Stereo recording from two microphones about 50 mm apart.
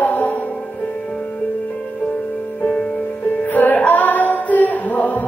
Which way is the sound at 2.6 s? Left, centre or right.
Left.